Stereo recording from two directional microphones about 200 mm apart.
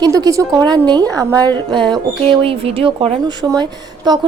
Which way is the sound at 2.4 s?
30° right (ahead or behind).